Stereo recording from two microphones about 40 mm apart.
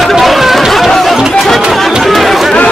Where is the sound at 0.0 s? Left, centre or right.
Centre.